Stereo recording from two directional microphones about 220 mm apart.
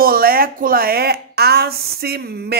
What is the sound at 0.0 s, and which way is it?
Speech, 40° right (ahead or behind).